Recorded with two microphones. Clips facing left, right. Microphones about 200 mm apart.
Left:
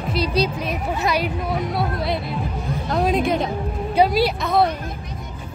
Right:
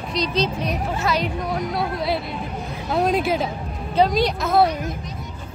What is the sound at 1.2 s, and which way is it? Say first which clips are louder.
Speech: left 1 dB; centre (ahead or behind).